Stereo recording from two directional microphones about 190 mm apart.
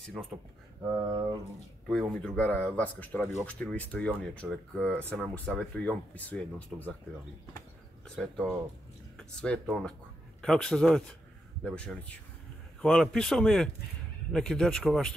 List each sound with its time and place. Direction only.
0.2 s speech: centre (ahead or behind)
1.9 s speech: centre (ahead or behind)
8.2 s speech: 5° left (ahead or behind)